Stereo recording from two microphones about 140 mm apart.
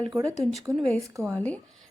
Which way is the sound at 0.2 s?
20° right (ahead or behind).